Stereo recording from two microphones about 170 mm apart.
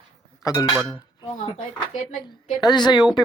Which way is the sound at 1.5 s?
45° left (ahead or behind).